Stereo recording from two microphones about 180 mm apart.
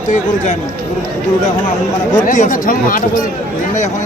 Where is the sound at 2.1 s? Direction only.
45° left (ahead or behind).